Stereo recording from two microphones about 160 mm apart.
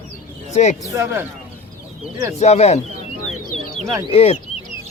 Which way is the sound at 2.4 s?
45° left (ahead or behind).